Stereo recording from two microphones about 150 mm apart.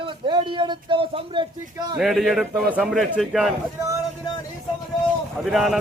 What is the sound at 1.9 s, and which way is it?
A man's voice, centre (ahead or behind).